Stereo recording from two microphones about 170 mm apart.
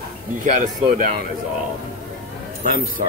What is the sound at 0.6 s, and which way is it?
Speech, 55° right (ahead or behind).